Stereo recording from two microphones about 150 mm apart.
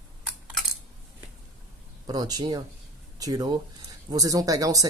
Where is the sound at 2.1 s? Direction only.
25° right (ahead or behind).